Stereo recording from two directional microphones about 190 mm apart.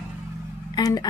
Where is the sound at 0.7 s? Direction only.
20° left (ahead or behind).